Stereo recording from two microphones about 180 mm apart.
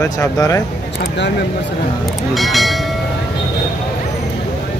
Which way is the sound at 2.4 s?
Centre (ahead or behind).